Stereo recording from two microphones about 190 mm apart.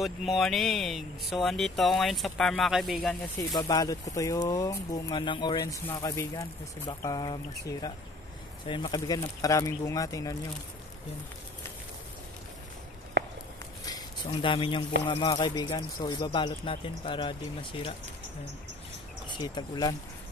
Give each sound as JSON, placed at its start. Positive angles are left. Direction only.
{"t": 0.0, "sound": "speech", "side_deg": 0}
{"t": 3.3, "sound": "speech", "side_deg": 20}
{"t": 8.6, "sound": "speech", "side_deg": 25}
{"t": 13.8, "sound": "speech", "side_deg": 25}
{"t": 19.2, "sound": "speech", "side_deg": 25}